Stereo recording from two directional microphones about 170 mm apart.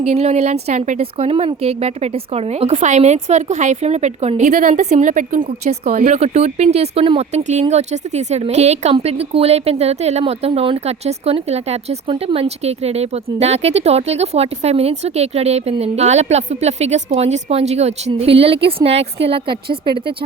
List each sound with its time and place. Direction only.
0.0 s speech: 40° right (ahead or behind)
6.0 s speech: 40° right (ahead or behind)